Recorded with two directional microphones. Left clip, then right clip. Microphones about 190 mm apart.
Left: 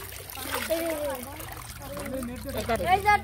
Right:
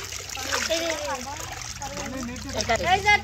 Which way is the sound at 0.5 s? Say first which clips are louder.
Right 3 dB; 50° left (ahead or behind).